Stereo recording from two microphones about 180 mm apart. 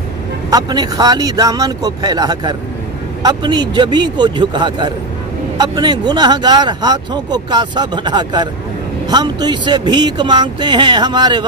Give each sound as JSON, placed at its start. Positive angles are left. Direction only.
{"t": 0.5, "sound": "speech", "side_deg": -20}